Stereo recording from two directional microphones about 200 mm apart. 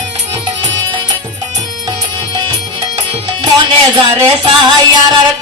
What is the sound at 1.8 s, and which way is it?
Music, 20° right (ahead or behind).